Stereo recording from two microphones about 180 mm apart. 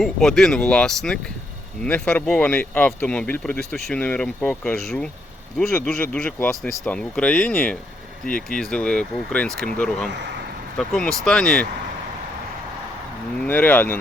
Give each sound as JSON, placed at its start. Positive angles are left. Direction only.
{"t": 0.0, "sound": "speech", "side_deg": 0}
{"t": 10.1, "sound": "speech", "side_deg": -75}
{"t": 10.8, "sound": "speech", "side_deg": 5}
{"t": 13.4, "sound": "speech", "side_deg": 10}